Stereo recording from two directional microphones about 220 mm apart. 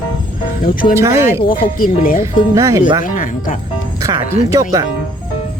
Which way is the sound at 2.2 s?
15° right (ahead or behind).